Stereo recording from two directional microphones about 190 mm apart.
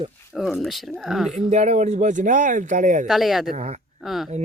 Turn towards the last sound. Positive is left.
turn(degrees=0)  # may be behind; listen again after turning